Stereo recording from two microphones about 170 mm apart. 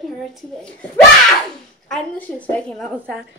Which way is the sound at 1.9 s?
10° left (ahead or behind).